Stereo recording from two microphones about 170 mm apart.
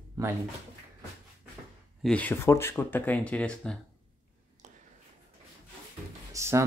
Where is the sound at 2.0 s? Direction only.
5° left (ahead or behind).